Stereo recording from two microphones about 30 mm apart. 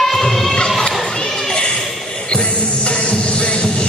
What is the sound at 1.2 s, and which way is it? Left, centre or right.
Children playing, centre.